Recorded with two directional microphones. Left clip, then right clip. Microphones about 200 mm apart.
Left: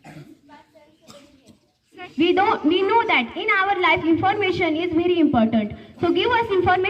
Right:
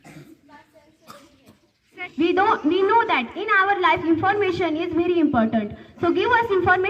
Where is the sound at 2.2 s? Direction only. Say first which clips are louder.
Left 1 dB; 25° left (ahead or behind).